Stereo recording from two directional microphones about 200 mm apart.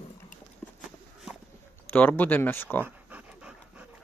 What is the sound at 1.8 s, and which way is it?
Speech, 10° left (ahead or behind).